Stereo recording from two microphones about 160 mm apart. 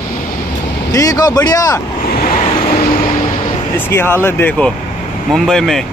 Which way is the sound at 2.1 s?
70° left (ahead or behind).